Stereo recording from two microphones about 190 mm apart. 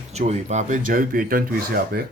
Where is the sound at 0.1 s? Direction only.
35° right (ahead or behind).